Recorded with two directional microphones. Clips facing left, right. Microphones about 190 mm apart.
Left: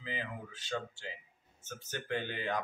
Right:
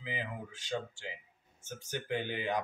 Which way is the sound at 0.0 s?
15° right (ahead or behind).